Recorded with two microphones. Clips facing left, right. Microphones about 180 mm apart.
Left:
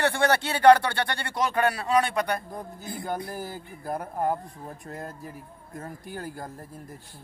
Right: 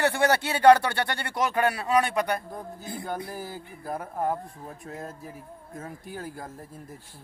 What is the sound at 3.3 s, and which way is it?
Speech, centre (ahead or behind).